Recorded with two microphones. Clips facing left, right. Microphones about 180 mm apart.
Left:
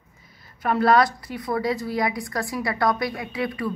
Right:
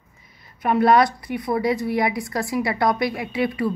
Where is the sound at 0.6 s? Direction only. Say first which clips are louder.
Right 2 dB; 20° right (ahead or behind).